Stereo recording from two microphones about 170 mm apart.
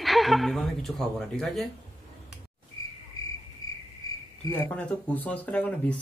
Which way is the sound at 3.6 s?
20° left (ahead or behind).